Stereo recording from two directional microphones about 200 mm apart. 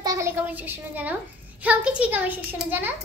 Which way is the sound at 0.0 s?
15° right (ahead or behind).